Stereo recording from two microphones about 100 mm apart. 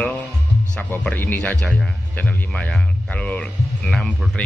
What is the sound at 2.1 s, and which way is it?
Speech, 15° left (ahead or behind).